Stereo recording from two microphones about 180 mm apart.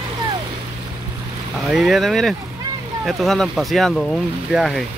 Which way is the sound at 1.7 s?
Centre (ahead or behind).